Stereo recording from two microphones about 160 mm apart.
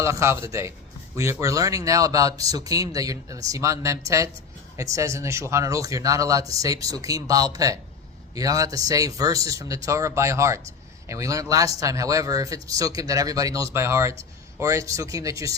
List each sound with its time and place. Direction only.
0.0 s a man's voice: 15° right (ahead or behind)